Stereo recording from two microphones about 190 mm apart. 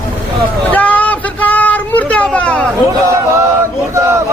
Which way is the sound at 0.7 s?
10° left (ahead or behind).